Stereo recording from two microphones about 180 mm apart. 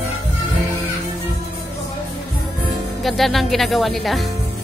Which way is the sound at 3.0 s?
Centre (ahead or behind).